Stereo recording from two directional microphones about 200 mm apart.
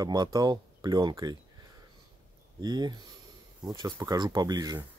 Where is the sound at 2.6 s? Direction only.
20° right (ahead or behind).